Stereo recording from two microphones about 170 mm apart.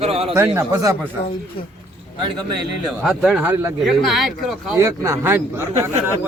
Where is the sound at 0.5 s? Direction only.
15° right (ahead or behind).